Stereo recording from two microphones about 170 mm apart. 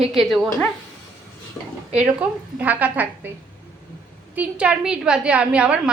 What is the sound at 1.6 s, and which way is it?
Speech, 15° left (ahead or behind).